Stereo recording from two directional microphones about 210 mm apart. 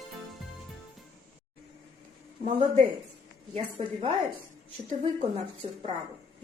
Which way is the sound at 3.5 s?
25° right (ahead or behind).